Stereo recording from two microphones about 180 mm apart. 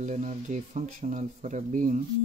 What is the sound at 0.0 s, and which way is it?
Speech, 40° right (ahead or behind).